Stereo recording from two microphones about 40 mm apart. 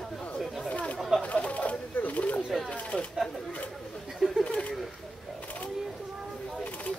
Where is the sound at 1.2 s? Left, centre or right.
Left.